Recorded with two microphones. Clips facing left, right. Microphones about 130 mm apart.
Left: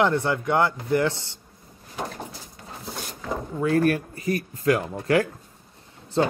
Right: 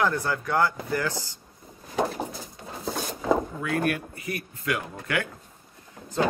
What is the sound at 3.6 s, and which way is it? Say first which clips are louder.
Speech: left 6 dB; 35° left (ahead or behind).